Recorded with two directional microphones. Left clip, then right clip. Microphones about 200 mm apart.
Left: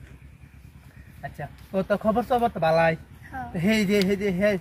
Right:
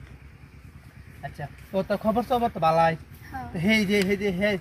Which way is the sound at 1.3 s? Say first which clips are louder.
Even; 5° right (ahead or behind).